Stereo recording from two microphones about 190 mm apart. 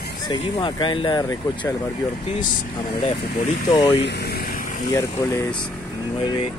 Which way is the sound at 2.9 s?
30° left (ahead or behind).